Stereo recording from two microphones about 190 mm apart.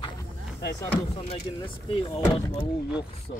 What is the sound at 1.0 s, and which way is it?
Speech, 30° left (ahead or behind).